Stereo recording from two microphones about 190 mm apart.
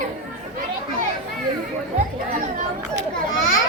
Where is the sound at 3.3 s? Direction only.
90° left.